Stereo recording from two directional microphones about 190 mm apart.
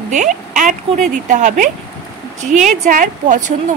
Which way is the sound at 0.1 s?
40° right (ahead or behind).